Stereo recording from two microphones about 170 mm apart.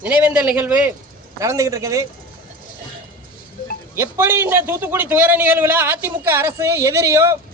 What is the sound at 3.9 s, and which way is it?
A man's voice, 15° right (ahead or behind).